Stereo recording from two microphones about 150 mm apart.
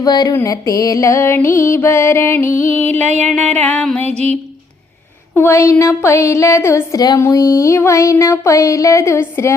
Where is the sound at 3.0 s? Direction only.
50° right (ahead or behind).